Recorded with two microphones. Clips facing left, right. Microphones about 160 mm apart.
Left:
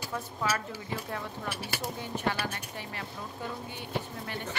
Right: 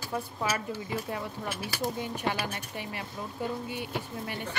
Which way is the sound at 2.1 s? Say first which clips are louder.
Even; 15° right (ahead or behind).